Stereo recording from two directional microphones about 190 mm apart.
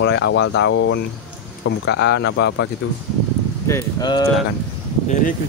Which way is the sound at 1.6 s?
65° left (ahead or behind).